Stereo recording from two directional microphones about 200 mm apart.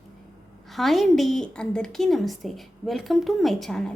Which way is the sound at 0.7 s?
Centre (ahead or behind).